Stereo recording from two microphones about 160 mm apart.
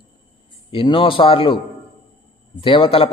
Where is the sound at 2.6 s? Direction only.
30° left (ahead or behind).